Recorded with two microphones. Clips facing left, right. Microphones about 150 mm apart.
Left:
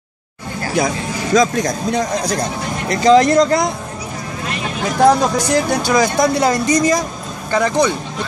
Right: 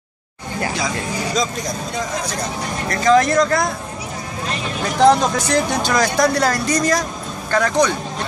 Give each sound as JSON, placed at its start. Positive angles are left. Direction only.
{"t": 0.7, "sound": "speech", "side_deg": 55}
{"t": 2.9, "sound": "speech", "side_deg": 20}
{"t": 5.0, "sound": "speech", "side_deg": 10}